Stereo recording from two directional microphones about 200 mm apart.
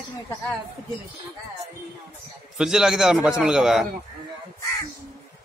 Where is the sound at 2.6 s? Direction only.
5° right (ahead or behind).